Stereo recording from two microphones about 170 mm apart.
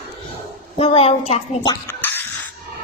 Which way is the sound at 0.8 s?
35° left (ahead or behind).